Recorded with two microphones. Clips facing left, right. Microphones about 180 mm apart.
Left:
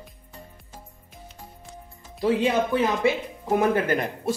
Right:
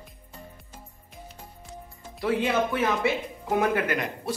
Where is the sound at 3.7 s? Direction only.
30° left (ahead or behind).